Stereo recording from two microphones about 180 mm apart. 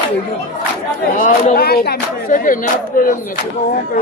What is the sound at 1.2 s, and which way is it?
Speech, 55° left (ahead or behind).